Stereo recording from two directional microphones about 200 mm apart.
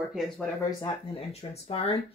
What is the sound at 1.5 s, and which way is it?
Speech, 30° left (ahead or behind).